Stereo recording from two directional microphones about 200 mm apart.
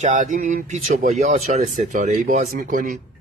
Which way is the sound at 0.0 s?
40° right (ahead or behind).